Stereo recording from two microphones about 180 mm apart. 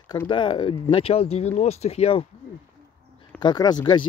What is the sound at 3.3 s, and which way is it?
Speech, 25° left (ahead or behind).